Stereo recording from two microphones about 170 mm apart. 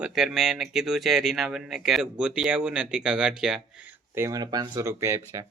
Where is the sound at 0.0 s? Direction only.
Centre (ahead or behind).